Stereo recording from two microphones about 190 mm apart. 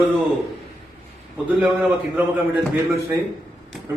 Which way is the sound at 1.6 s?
5° right (ahead or behind).